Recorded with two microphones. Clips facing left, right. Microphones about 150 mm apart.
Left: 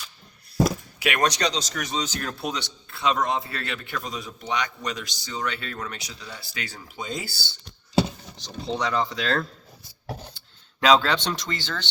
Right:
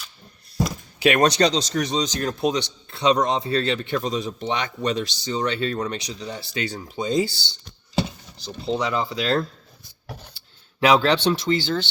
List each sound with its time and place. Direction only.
1.0 s a man's voice: 25° right (ahead or behind)
8.7 s speech: 10° right (ahead or behind)
10.8 s speech: 15° right (ahead or behind)